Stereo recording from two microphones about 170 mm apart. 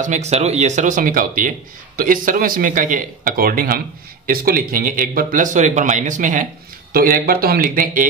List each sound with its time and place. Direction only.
0.0 s speech: 45° right (ahead or behind)
6.9 s speech: 60° right (ahead or behind)